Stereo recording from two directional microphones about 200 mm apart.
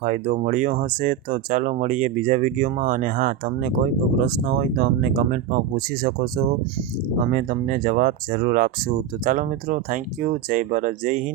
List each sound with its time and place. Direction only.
0.0 s speech: 40° right (ahead or behind)